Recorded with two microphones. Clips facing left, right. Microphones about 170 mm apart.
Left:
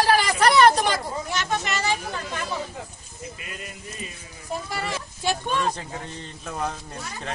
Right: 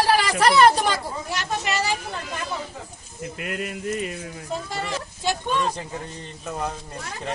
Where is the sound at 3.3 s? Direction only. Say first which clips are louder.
Right 9 dB; 70° right (ahead or behind).